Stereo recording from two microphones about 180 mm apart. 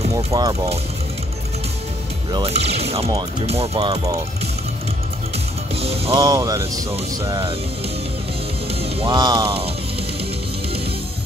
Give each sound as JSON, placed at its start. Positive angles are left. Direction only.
{"t": 0.3, "sound": "speech", "side_deg": -20}
{"t": 2.3, "sound": "speech", "side_deg": -35}
{"t": 5.8, "sound": "speech", "side_deg": -35}
{"t": 6.2, "sound": "speech", "side_deg": -20}
{"t": 8.6, "sound": "music", "side_deg": -35}